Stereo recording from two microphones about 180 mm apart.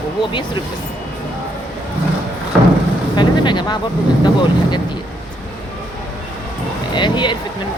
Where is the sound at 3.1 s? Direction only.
25° left (ahead or behind).